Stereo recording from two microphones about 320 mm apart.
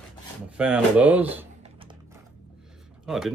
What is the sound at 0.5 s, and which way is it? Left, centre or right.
Speech, centre.